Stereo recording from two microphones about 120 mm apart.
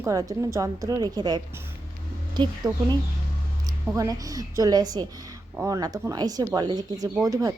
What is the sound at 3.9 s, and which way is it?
Speech, 30° right (ahead or behind).